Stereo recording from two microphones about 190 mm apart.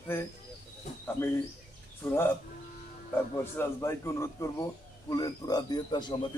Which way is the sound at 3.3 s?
15° left (ahead or behind).